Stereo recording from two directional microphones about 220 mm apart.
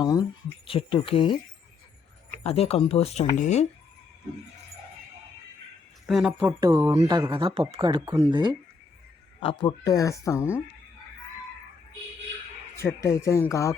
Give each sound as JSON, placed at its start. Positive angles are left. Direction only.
{"t": 0.0, "sound": "speech", "side_deg": 20}
{"t": 2.4, "sound": "speech", "side_deg": 25}
{"t": 6.1, "sound": "speech", "side_deg": 0}
{"t": 6.6, "sound": "speech", "side_deg": -15}
{"t": 9.4, "sound": "speech", "side_deg": 25}
{"t": 12.7, "sound": "speech", "side_deg": 10}